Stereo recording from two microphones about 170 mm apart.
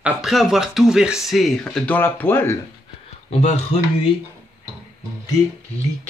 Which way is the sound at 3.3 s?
40° left (ahead or behind).